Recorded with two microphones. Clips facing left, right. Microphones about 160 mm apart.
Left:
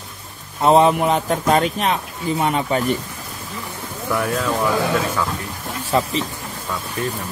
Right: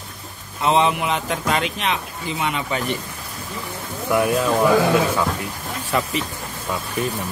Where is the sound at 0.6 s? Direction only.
40° left (ahead or behind).